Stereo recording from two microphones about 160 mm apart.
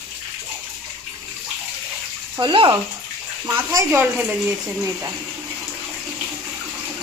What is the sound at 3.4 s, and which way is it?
Speech, 15° right (ahead or behind).